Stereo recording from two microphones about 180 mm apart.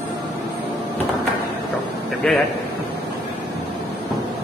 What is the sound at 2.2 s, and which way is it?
Speech, 5° left (ahead or behind).